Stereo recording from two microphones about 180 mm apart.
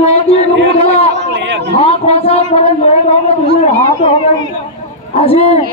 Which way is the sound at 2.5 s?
35° left (ahead or behind).